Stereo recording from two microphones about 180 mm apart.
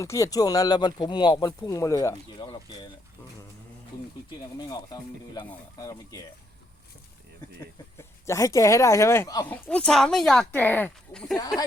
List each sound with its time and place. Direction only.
0.0 s speech: 15° left (ahead or behind)
4.3 s speech: 20° left (ahead or behind)
7.9 s speech: 15° left (ahead or behind)
9.5 s speech: 10° left (ahead or behind)
11.3 s speech: 20° left (ahead or behind)